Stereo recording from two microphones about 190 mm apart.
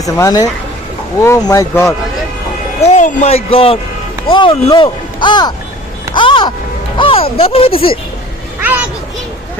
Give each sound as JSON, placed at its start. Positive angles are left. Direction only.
{"t": 0.0, "sound": "speech", "side_deg": 20}
{"t": 2.9, "sound": "speech", "side_deg": 40}
{"t": 6.1, "sound": "music", "side_deg": 25}
{"t": 7.0, "sound": "speech", "side_deg": 30}